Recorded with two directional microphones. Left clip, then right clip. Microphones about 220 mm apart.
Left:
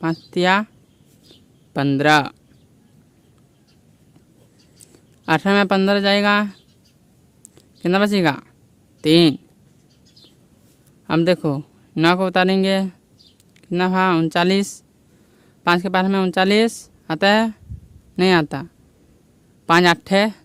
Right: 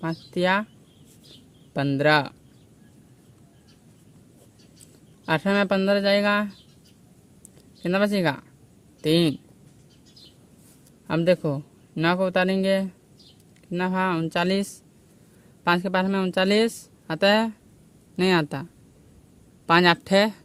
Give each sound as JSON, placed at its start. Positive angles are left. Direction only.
{"t": 0.0, "sound": "speech", "side_deg": 40}
{"t": 1.7, "sound": "speech", "side_deg": 40}
{"t": 5.2, "sound": "speech", "side_deg": 40}
{"t": 7.8, "sound": "speech", "side_deg": 35}
{"t": 11.0, "sound": "a man's voice", "side_deg": 35}